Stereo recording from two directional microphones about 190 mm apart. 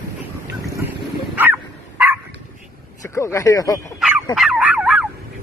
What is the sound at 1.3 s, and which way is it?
Dog, 10° right (ahead or behind).